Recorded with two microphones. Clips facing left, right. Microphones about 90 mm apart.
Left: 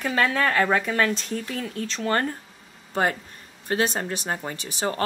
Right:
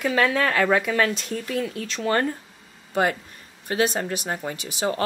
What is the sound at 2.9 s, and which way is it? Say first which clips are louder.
A woman's voice: right 1 dB; 35° left (ahead or behind).